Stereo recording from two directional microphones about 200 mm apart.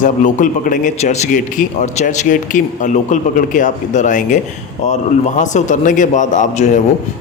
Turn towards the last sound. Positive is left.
turn(degrees=35)  # may be behind; listen again after turning